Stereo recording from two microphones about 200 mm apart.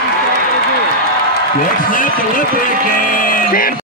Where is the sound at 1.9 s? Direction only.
45° left (ahead or behind).